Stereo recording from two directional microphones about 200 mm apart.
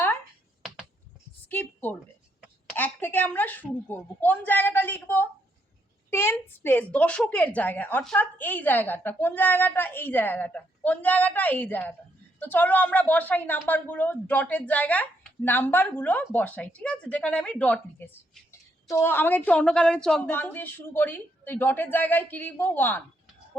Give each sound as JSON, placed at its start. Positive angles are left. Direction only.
{"t": 1.5, "sound": "a woman's voice", "side_deg": 10}